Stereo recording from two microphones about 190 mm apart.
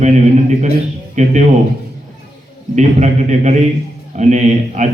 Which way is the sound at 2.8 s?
35° right (ahead or behind).